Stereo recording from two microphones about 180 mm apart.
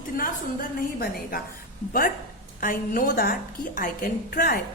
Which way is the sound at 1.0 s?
55° left (ahead or behind).